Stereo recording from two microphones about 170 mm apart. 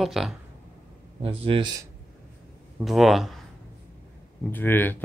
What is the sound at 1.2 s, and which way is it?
Speech, 35° right (ahead or behind).